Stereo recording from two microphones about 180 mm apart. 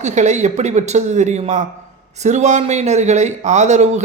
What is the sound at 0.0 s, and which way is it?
Speech, 40° right (ahead or behind).